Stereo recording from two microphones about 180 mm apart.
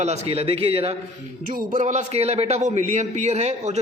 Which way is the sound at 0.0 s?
40° right (ahead or behind).